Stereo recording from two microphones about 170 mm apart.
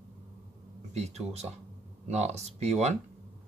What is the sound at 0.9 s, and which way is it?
Speech, 40° right (ahead or behind).